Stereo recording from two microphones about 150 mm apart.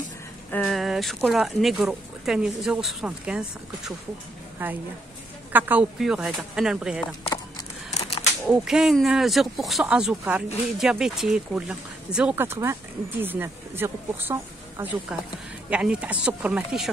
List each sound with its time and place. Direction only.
0.5 s speech: 10° left (ahead or behind)
7.9 s a sound: 45° left (ahead or behind)
8.5 s speech: 5° right (ahead or behind)